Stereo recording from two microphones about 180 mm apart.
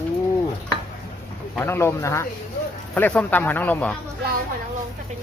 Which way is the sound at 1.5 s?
15° left (ahead or behind).